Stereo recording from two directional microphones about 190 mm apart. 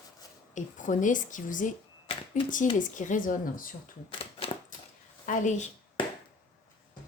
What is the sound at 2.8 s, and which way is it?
Speech, 45° left (ahead or behind).